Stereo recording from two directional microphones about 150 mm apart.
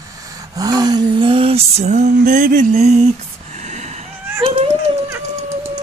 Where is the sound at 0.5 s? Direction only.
25° right (ahead or behind); by 4.0 s 50° right (ahead or behind).